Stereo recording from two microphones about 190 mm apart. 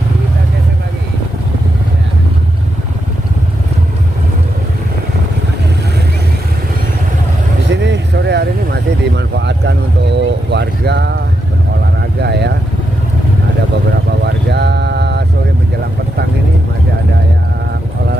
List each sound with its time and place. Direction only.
7.7 s vehicle: 70° right (ahead or behind)
12.2 s vehicle: 60° right (ahead or behind)
14.3 s vehicle: 60° right (ahead or behind)